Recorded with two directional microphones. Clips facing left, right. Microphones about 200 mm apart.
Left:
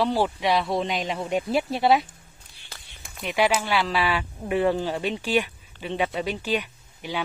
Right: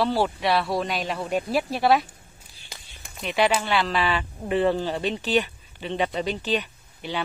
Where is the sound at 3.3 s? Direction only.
10° left (ahead or behind).